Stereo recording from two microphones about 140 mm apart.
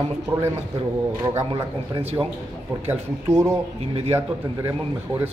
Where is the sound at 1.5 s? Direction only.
40° right (ahead or behind).